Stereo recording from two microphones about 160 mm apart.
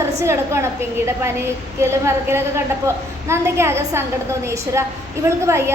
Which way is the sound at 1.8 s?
15° right (ahead or behind).